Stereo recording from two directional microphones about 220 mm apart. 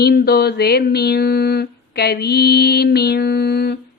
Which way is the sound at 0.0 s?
45° left (ahead or behind).